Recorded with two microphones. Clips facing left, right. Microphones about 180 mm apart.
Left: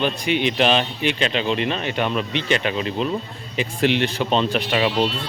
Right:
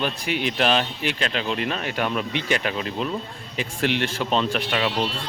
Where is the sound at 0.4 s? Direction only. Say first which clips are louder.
Left 1 dB; centre (ahead or behind).